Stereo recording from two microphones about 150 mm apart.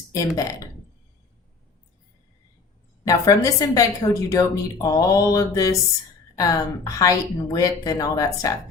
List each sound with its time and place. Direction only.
0.1 s speech: 20° left (ahead or behind)
3.0 s a woman's voice: 25° left (ahead or behind)